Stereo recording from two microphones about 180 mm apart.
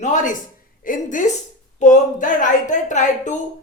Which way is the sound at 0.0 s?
45° left (ahead or behind).